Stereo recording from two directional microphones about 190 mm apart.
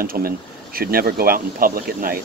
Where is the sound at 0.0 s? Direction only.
50° right (ahead or behind).